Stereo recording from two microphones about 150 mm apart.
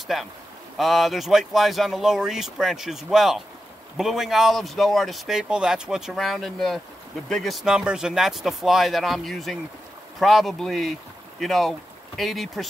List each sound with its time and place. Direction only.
0.1 s speech: centre (ahead or behind)